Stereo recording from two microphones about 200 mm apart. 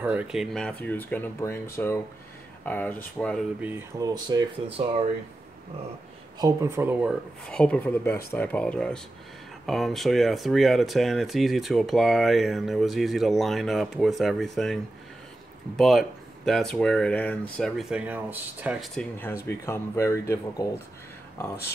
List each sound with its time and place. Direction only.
0.0 s speech: 5° right (ahead or behind)
3.6 s speech: 15° right (ahead or behind)
6.4 s speech: 15° right (ahead or behind)
7.4 s speech: 5° left (ahead or behind)
19.4 s speech: 10° left (ahead or behind)